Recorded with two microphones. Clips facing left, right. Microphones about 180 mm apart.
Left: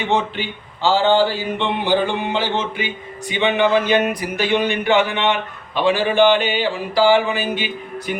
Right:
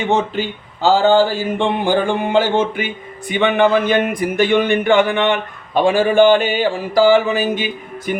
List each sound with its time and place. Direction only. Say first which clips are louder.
0.1 s a man's voice: right 2 dB; 45° right (ahead or behind)